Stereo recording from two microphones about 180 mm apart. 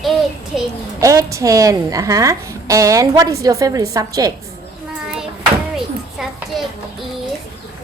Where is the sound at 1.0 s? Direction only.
20° right (ahead or behind).